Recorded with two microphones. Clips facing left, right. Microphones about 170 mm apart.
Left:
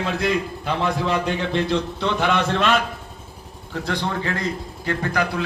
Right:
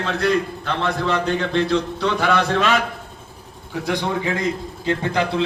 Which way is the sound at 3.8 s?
15° right (ahead or behind).